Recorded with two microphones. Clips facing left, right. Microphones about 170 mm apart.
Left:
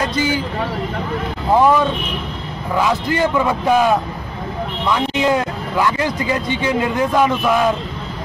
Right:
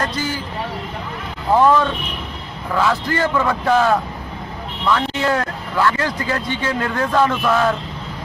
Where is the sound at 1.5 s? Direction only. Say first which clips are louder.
Left 1 dB; 10° left (ahead or behind).